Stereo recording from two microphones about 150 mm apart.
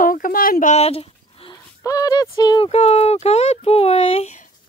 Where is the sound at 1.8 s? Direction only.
25° left (ahead or behind); by 4.5 s 50° left (ahead or behind).